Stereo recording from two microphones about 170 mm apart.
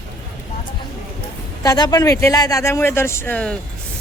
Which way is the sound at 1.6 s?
25° left (ahead or behind).